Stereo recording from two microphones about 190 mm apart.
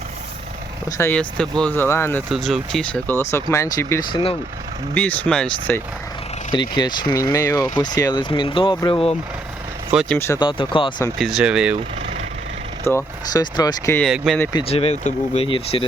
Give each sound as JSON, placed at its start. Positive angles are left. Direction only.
{"t": 0.9, "sound": "speech", "side_deg": 15}
{"t": 2.3, "sound": "speech", "side_deg": 0}
{"t": 6.5, "sound": "speech", "side_deg": 25}
{"t": 9.9, "sound": "speech", "side_deg": 0}
{"t": 10.2, "sound": "speech", "side_deg": 15}
{"t": 11.2, "sound": "speech", "side_deg": -5}
{"t": 11.8, "sound": "vehicle", "side_deg": -30}
{"t": 12.8, "sound": "speech", "side_deg": 15}
{"t": 14.0, "sound": "speech", "side_deg": 0}
{"t": 14.5, "sound": "speech", "side_deg": 30}